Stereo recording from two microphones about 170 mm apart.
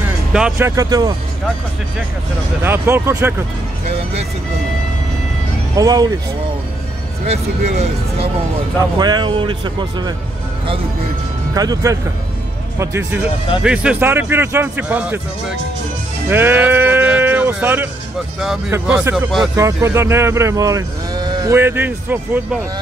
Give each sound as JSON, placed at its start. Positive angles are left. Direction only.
{"t": 0.6, "sound": "speech", "side_deg": -20}
{"t": 2.6, "sound": "speech", "side_deg": -15}
{"t": 5.8, "sound": "speech", "side_deg": -20}
{"t": 7.2, "sound": "speech", "side_deg": -40}
{"t": 8.9, "sound": "speech", "side_deg": -25}
{"t": 11.5, "sound": "speech", "side_deg": -20}
{"t": 16.3, "sound": "speech", "side_deg": -10}
{"t": 19.5, "sound": "speech", "side_deg": -15}
{"t": 21.5, "sound": "speech", "side_deg": -15}